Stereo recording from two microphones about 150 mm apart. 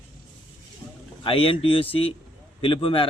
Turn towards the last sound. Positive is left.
turn(degrees=35)  # may be behind; listen again after turning